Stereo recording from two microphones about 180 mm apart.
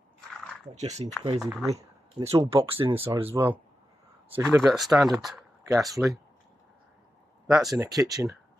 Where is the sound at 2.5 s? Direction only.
30° right (ahead or behind).